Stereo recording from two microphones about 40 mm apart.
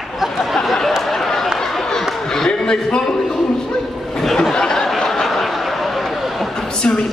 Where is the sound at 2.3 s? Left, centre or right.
Centre.